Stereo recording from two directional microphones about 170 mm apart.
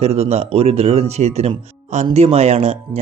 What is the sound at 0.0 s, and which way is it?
Speech, 40° right (ahead or behind).